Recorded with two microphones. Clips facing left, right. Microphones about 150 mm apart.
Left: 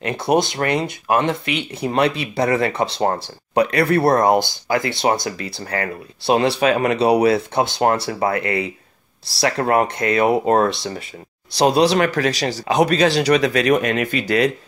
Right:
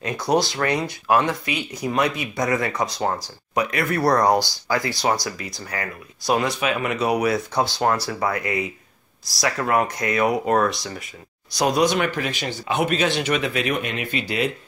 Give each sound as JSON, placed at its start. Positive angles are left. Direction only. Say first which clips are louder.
{"t": 0.1, "sound": "speech", "louder": "left 3 dB", "side_deg": 25}